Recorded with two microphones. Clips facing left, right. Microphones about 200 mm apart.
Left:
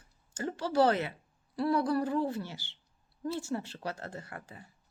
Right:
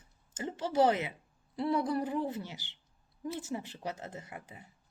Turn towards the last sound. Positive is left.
turn(degrees=-20)  # may be behind; listen again after turning